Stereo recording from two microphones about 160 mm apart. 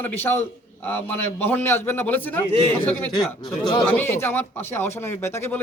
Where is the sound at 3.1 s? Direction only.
25° left (ahead or behind).